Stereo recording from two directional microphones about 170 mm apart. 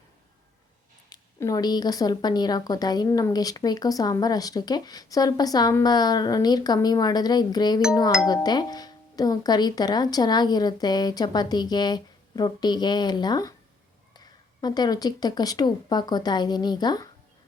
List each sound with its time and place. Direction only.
1.1 s a woman's voice: 20° left (ahead or behind)